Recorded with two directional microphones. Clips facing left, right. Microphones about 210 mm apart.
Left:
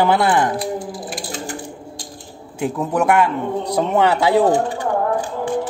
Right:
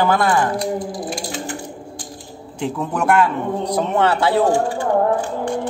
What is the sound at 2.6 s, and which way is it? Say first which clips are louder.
Speech: left 3 dB; 5° left (ahead or behind).